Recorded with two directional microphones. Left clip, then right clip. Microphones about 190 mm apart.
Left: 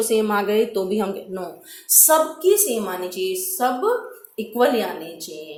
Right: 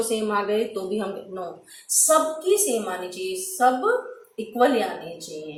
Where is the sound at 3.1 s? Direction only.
50° left (ahead or behind).